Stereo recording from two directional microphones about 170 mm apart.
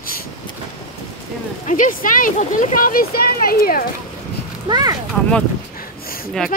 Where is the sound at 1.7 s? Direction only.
50° left (ahead or behind).